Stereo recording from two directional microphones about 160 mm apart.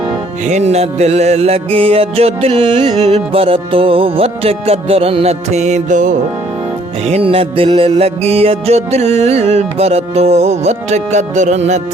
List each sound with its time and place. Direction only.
0.4 s music: 45° right (ahead or behind)
7.0 s music: 40° right (ahead or behind)